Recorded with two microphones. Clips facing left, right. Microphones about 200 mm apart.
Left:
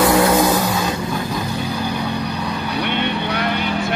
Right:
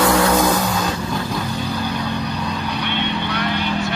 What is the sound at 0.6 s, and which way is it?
Vehicle, 5° left (ahead or behind).